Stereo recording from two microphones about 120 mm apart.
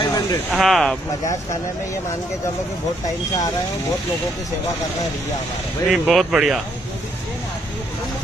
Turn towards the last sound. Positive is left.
turn(degrees=-5)  # may be behind; listen again after turning